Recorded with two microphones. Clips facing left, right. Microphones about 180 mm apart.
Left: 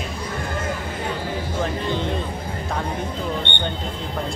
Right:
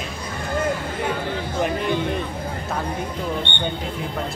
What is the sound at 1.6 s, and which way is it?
Speech, 15° right (ahead or behind).